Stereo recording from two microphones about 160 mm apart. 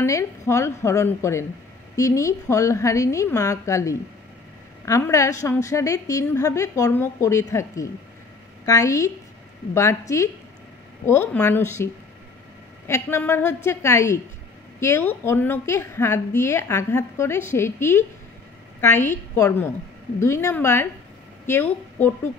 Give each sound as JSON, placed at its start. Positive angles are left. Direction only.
{"t": 0.0, "sound": "a woman's voice", "side_deg": 20}